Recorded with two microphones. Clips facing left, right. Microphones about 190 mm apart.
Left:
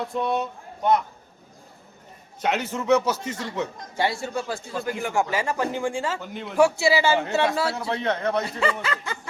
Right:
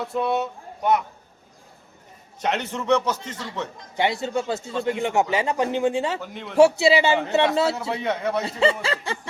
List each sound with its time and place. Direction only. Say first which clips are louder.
0.0 s a man's voice: right 1 dB; 5° right (ahead or behind)
2.4 s a man's voice: even; centre (ahead or behind)
3.9 s speech: right 3 dB; 20° right (ahead or behind)
6.1 s a man's voice: even; centre (ahead or behind)
6.6 s speech: right 4 dB; 20° right (ahead or behind)
7.9 s a man's voice: even; 5° right (ahead or behind)
8.4 s speech: right 4 dB; 25° right (ahead or behind)